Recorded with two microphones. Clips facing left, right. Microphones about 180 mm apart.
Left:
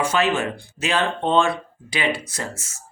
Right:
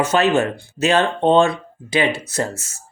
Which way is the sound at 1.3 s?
25° right (ahead or behind).